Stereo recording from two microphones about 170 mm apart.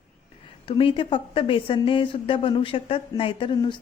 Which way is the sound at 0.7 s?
30° left (ahead or behind).